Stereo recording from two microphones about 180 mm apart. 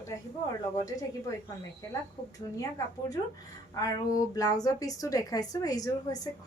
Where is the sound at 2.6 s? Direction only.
20° left (ahead or behind).